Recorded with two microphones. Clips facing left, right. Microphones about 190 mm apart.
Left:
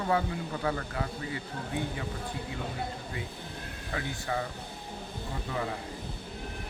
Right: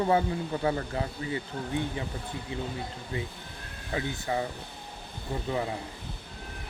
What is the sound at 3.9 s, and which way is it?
Speech, 20° right (ahead or behind).